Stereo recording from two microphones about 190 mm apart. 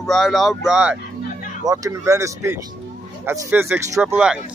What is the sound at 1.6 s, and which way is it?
Speech, 15° right (ahead or behind).